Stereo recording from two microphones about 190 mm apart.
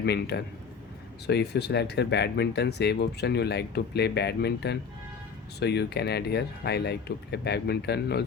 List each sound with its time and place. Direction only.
0.0 s speech: 60° left (ahead or behind)